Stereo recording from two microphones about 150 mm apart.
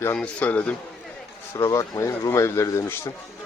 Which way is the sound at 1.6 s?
20° left (ahead or behind).